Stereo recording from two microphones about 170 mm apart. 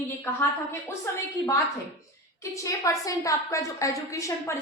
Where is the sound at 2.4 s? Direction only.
20° left (ahead or behind).